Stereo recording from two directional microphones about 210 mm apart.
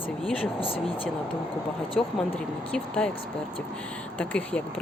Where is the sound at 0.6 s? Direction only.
25° left (ahead or behind).